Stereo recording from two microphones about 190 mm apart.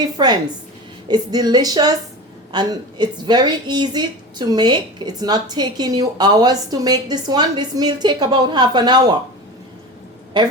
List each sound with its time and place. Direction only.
0.2 s a woman's voice: 20° right (ahead or behind)
10.3 s a woman's voice: 25° right (ahead or behind)